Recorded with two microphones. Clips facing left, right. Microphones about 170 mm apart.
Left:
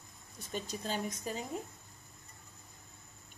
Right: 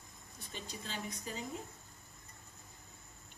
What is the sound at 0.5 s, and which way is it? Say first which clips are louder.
Speech: left 7 dB; 45° left (ahead or behind).